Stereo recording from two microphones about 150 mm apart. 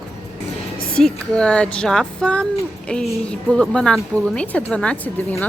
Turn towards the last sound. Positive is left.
turn(degrees=10)  # may be behind; listen again after turning